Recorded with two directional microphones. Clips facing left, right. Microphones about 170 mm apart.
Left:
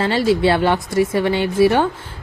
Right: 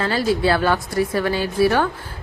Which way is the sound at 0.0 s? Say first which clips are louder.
Left 3 dB; 25° left (ahead or behind).